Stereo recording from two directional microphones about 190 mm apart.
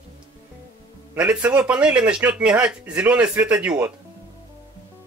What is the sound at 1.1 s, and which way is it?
Speech, 5° right (ahead or behind).